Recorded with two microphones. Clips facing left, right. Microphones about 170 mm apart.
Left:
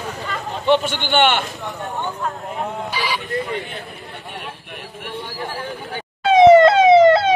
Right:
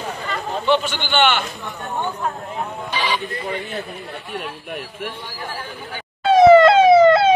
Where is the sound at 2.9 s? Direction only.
10° left (ahead or behind).